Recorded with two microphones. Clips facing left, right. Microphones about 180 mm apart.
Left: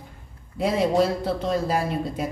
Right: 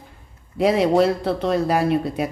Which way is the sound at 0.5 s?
70° right (ahead or behind).